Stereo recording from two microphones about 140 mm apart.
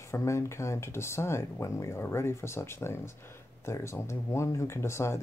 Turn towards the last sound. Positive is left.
turn(degrees=20)  # may be behind; listen again after turning